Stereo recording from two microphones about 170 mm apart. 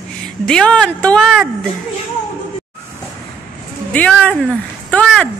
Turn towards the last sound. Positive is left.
turn(degrees=5)  # may be behind; listen again after turning